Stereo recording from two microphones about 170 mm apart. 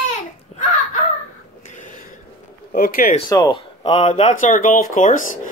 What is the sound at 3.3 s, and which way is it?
Speech, 25° left (ahead or behind).